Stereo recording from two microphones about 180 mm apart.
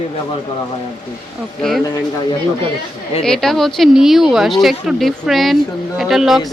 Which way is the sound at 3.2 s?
5° left (ahead or behind).